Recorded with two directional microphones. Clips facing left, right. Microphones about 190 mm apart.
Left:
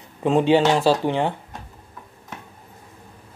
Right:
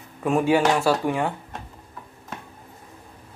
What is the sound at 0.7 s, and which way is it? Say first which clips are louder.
Speech: left 3 dB; 30° left (ahead or behind).